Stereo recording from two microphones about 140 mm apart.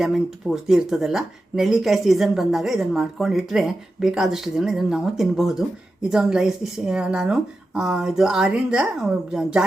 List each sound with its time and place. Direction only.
0.0 s speech: centre (ahead or behind)